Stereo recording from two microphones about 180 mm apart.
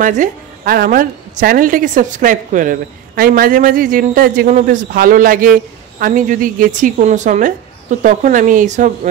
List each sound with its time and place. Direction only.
0.0 s a woman's voice: 45° right (ahead or behind)